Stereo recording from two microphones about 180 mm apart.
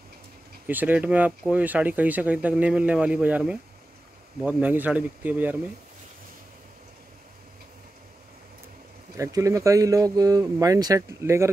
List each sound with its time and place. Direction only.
0.7 s speech: 10° right (ahead or behind)
9.1 s speech: 20° right (ahead or behind)